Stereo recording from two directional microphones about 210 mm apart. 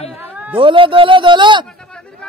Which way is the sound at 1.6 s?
5° left (ahead or behind).